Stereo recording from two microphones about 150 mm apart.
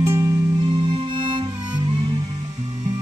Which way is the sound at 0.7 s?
35° right (ahead or behind).